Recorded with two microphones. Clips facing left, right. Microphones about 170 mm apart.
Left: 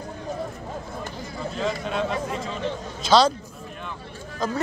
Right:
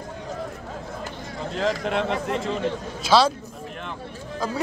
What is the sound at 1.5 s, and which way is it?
Speech, 90° right.